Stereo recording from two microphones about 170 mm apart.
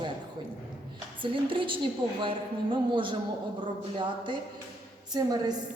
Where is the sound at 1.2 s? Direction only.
30° right (ahead or behind).